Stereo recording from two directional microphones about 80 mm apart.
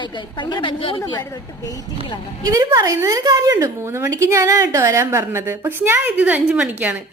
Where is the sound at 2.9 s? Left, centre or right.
Right.